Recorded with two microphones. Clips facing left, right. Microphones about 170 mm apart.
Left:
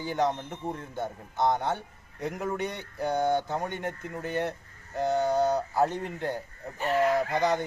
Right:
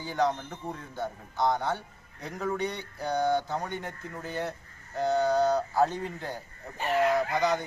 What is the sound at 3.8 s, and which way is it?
Speech, 60° left (ahead or behind).